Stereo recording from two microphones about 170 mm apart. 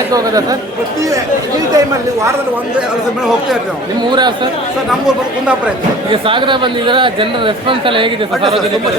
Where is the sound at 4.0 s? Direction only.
25° right (ahead or behind).